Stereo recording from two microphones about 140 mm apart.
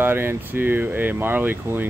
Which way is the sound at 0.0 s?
15° right (ahead or behind).